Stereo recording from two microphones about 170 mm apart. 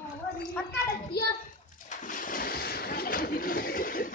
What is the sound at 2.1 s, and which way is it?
Speech, 55° left (ahead or behind).